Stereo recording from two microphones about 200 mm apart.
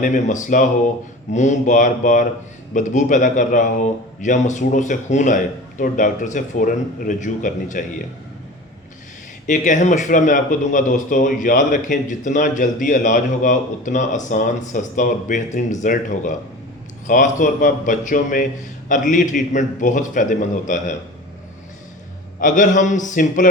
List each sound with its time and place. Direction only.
0.0 s speech: 40° left (ahead or behind)
9.5 s speech: 40° left (ahead or behind)
22.4 s speech: 40° left (ahead or behind)